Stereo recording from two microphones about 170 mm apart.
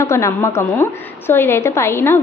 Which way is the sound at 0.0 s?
15° left (ahead or behind).